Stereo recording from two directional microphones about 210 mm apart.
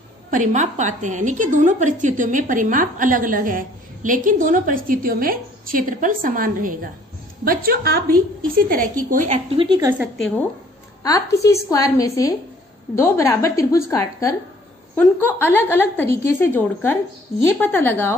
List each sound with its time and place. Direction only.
0.3 s a woman's voice: 35° right (ahead or behind)
9.6 s a woman's voice: 20° right (ahead or behind)
11.0 s a woman's voice: 15° left (ahead or behind)